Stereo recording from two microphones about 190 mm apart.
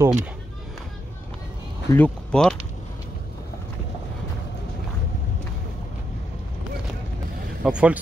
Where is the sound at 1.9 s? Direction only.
5° left (ahead or behind).